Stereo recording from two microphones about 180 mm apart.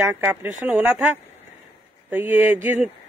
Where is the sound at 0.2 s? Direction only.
10° right (ahead or behind).